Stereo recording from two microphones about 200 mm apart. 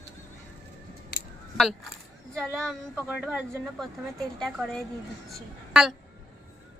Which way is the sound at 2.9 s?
5° right (ahead or behind).